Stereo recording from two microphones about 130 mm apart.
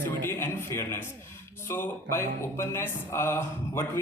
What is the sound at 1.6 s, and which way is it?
Speech, 20° left (ahead or behind).